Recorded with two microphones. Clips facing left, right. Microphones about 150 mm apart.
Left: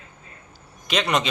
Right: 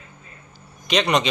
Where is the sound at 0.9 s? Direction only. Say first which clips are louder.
Right 3 dB; 5° left (ahead or behind).